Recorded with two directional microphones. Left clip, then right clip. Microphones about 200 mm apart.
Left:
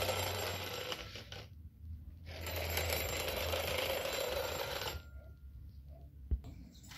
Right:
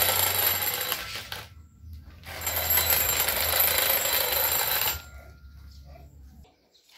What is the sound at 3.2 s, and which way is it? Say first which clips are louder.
Alarm clock: right 10 dB; 30° right (ahead or behind).